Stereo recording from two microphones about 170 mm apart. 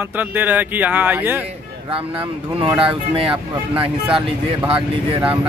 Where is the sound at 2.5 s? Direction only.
35° right (ahead or behind).